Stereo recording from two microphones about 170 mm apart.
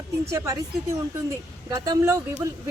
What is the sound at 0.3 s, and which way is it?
Speech, 15° right (ahead or behind).